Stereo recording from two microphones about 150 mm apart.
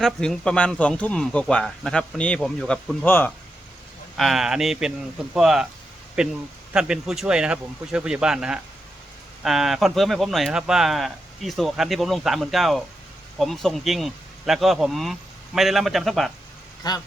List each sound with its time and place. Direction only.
0.0 s speech: 5° left (ahead or behind)
4.2 s speech: centre (ahead or behind)
16.8 s a man's voice: 30° left (ahead or behind)